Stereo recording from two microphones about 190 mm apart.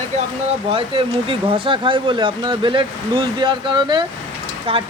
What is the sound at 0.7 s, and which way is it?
Speech, 30° right (ahead or behind).